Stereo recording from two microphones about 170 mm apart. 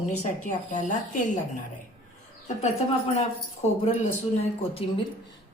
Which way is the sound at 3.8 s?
35° left (ahead or behind).